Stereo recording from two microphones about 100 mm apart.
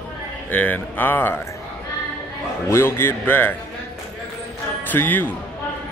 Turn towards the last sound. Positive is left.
turn(degrees=20)  # may be behind; listen again after turning